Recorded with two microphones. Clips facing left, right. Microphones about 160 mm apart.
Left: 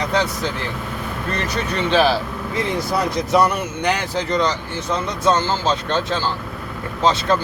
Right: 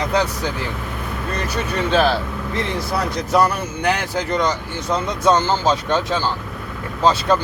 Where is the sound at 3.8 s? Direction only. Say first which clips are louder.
Right 2 dB; 5° right (ahead or behind).